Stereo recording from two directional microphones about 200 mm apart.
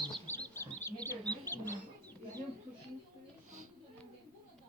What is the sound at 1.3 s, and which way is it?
Duck, 10° left (ahead or behind).